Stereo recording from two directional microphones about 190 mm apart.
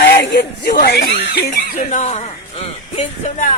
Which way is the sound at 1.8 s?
40° left (ahead or behind).